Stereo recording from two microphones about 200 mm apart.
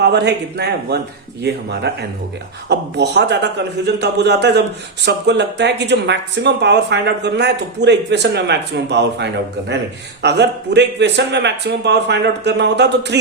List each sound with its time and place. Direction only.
0.0 s speech: 60° right (ahead or behind)